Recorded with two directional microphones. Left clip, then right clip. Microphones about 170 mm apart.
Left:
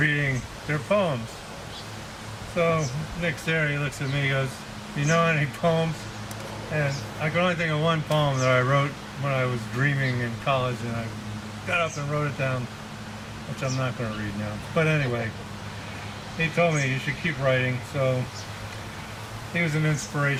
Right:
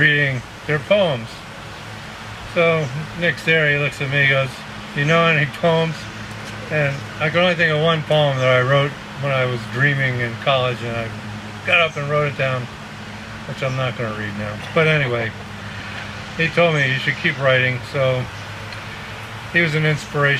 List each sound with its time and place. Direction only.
0.0 s a sound: 25° right (ahead or behind)
0.7 s speech: 25° right (ahead or behind)
2.6 s speech: 25° right (ahead or behind)
7.2 s speech: 20° right (ahead or behind)
14.8 s speech: 25° right (ahead or behind)
16.4 s speech: 25° right (ahead or behind)
19.5 s speech: 25° right (ahead or behind)